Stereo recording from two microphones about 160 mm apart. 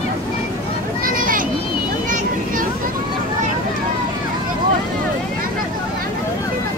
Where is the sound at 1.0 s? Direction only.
60° right (ahead or behind).